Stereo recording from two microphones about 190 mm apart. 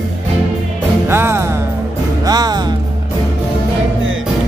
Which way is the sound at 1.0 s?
10° right (ahead or behind).